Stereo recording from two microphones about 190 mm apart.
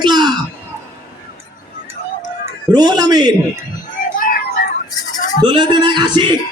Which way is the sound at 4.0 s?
45° left (ahead or behind).